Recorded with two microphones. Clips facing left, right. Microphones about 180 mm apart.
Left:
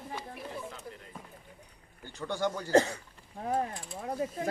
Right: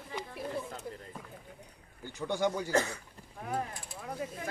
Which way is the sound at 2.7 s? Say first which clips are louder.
Left 6 dB; 35° left (ahead or behind).